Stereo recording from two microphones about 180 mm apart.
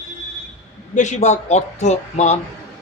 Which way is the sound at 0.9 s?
40° left (ahead or behind).